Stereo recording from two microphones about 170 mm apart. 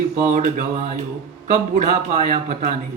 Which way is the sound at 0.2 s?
50° right (ahead or behind).